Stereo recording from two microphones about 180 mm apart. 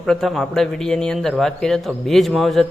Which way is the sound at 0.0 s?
Centre (ahead or behind).